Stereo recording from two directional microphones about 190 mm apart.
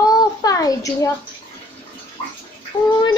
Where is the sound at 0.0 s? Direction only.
20° left (ahead or behind).